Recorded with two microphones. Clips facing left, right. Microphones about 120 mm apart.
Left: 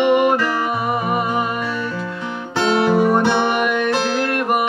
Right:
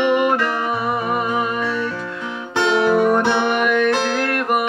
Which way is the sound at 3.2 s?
5° left (ahead or behind).